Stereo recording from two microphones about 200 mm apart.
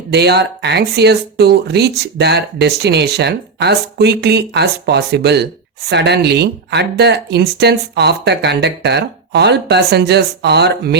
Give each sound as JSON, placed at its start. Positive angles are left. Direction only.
{"t": 0.1, "sound": "speech", "side_deg": -55}